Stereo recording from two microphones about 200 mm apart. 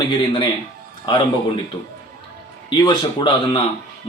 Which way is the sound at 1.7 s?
15° left (ahead or behind).